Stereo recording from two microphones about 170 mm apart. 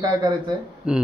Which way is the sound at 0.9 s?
5° right (ahead or behind).